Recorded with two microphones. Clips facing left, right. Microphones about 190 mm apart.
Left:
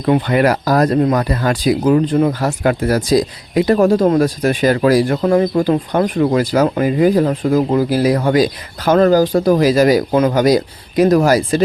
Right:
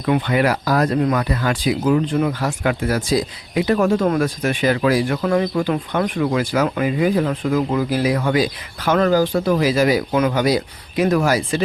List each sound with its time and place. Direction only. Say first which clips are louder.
0.0 s speech: left 4 dB; 40° left (ahead or behind)